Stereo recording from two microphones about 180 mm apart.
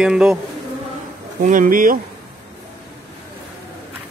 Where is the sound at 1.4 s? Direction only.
50° right (ahead or behind).